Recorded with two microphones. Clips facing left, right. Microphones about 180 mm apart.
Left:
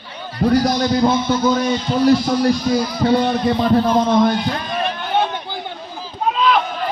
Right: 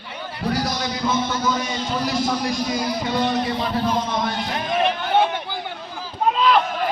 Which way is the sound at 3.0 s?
55° left (ahead or behind).